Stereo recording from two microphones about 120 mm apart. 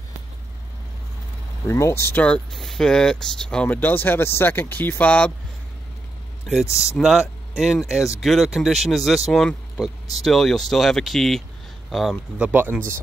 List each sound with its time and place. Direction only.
1.7 s speech: 25° left (ahead or behind)
2.0 s speech: 10° left (ahead or behind)
6.4 s speech: centre (ahead or behind)
12.4 s speech: 15° right (ahead or behind)